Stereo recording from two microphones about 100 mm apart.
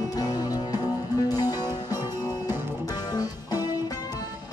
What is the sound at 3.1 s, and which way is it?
Music, 40° left (ahead or behind).